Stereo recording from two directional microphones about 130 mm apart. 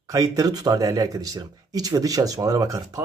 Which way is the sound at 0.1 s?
30° right (ahead or behind).